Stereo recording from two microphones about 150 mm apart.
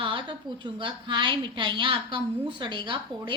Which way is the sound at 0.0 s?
35° right (ahead or behind).